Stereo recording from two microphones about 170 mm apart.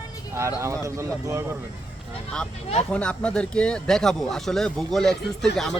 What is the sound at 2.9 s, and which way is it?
Speech, 5° left (ahead or behind).